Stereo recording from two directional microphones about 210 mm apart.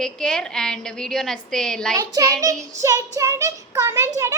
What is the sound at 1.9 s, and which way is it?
A child's voice, 15° right (ahead or behind).